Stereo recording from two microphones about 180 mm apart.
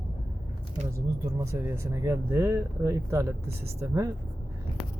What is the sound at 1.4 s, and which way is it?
Speech, 15° right (ahead or behind).